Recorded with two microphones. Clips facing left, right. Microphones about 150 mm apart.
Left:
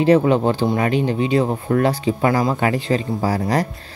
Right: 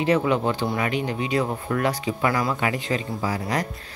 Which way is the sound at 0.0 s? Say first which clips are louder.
Left 6 dB; 35° left (ahead or behind).